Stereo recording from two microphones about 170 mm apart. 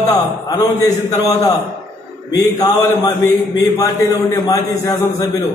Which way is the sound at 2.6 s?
20° left (ahead or behind).